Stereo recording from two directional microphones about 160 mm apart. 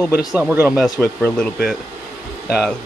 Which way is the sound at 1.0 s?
10° left (ahead or behind).